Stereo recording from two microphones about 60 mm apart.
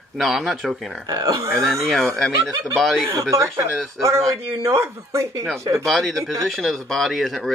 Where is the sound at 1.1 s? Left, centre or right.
Right.